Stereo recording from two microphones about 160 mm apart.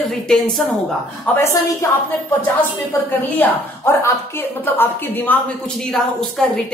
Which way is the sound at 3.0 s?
15° left (ahead or behind).